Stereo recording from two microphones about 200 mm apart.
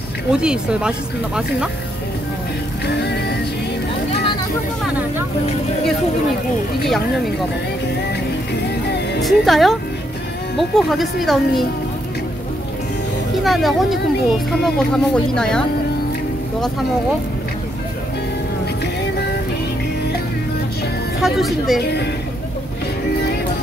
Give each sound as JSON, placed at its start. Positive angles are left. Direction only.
{"t": 0.3, "sound": "speech", "side_deg": -5}
{"t": 3.0, "sound": "music", "side_deg": 55}
{"t": 9.2, "sound": "speech", "side_deg": 0}
{"t": 13.4, "sound": "speech", "side_deg": 0}
{"t": 21.2, "sound": "speech", "side_deg": 0}